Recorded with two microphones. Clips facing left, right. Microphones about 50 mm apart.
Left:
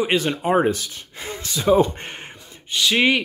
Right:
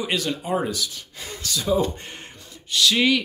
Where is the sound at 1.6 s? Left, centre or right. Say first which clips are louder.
Left 6 dB; left.